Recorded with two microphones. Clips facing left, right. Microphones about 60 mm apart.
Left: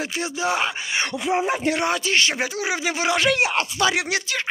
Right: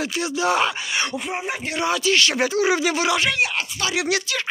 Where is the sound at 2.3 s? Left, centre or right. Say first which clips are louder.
Right 5 dB; centre.